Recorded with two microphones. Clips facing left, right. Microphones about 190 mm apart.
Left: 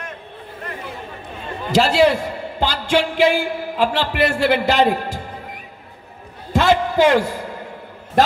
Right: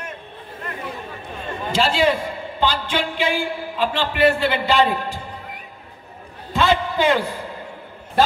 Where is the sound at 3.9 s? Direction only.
80° left.